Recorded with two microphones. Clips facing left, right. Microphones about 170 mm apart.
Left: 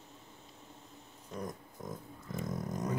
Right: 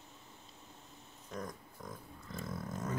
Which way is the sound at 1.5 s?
20° left (ahead or behind).